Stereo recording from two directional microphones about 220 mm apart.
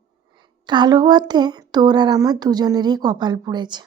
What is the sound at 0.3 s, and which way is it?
Speech, 20° right (ahead or behind).